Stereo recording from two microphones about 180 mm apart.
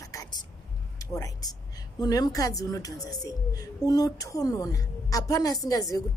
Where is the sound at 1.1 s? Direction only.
20° left (ahead or behind).